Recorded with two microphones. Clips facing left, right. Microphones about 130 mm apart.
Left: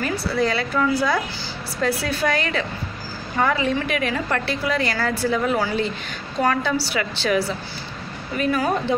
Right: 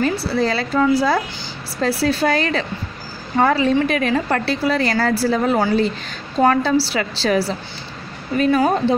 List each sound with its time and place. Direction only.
0.0 s a woman's voice: 30° right (ahead or behind)